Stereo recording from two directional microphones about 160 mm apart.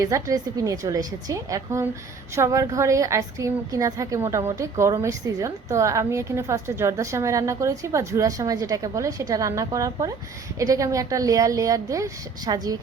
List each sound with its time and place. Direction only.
0.0 s a woman's voice: 20° right (ahead or behind)